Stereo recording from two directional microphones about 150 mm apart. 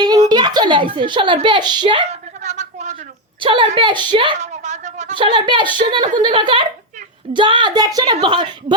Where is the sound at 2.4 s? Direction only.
50° right (ahead or behind).